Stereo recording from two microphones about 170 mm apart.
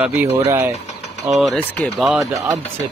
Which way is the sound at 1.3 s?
Centre (ahead or behind).